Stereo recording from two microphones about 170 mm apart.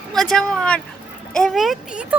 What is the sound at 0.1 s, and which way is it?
Speech, 5° left (ahead or behind).